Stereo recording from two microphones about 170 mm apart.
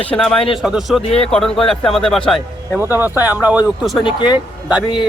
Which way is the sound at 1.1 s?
35° left (ahead or behind).